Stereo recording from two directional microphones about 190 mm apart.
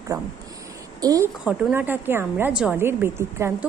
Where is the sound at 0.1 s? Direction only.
20° right (ahead or behind).